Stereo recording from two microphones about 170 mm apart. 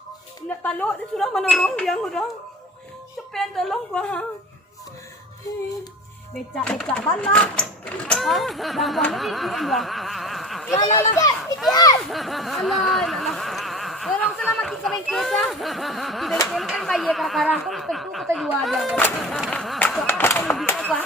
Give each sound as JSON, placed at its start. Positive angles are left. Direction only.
{"t": 0.4, "sound": "speech", "side_deg": 10}
{"t": 3.3, "sound": "speech", "side_deg": 0}
{"t": 6.3, "sound": "speech", "side_deg": 5}
{"t": 10.9, "sound": "speech", "side_deg": 20}
{"t": 12.0, "sound": "a sound", "side_deg": 0}
{"t": 16.5, "sound": "speech", "side_deg": 0}
{"t": 20.1, "sound": "a sound", "side_deg": 15}